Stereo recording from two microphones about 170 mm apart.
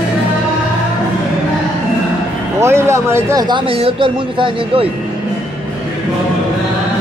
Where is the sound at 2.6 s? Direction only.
15° right (ahead or behind).